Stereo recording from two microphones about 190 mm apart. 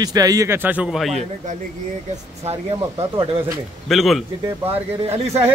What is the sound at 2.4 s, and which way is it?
Speech, 30° right (ahead or behind).